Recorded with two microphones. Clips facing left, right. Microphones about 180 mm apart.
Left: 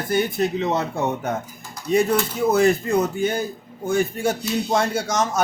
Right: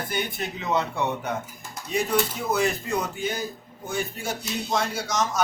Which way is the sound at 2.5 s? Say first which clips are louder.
Left 6 dB; 50° left (ahead or behind).